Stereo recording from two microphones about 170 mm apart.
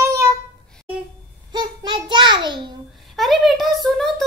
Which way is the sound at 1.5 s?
25° right (ahead or behind).